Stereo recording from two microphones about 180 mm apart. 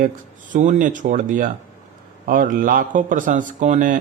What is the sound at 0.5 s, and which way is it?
Speech, 45° right (ahead or behind).